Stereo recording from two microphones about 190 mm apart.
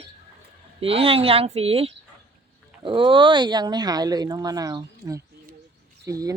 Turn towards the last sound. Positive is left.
turn(degrees=-15)  # may be behind; listen again after turning